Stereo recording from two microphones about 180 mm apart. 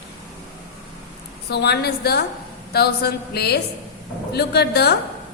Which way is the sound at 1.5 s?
65° left (ahead or behind).